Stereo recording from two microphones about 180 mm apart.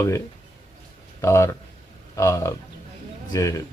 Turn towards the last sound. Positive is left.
turn(degrees=20)  # may be behind; listen again after turning